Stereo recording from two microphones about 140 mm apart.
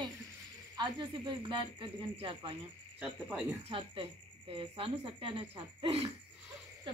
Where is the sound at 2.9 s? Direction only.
5° right (ahead or behind).